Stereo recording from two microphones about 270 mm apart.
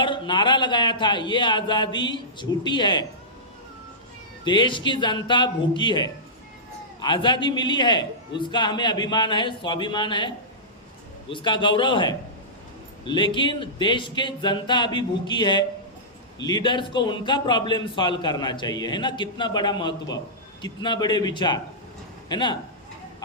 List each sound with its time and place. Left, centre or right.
0.0 s a man's voice: centre
4.4 s a man's voice: centre